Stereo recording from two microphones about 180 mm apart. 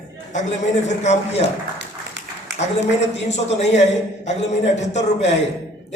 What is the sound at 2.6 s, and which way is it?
A man's voice, 40° left (ahead or behind).